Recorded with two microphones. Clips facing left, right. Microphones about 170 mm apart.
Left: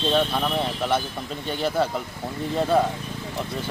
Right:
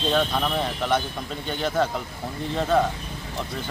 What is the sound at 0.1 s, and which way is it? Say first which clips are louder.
Speech: even; 5° left (ahead or behind).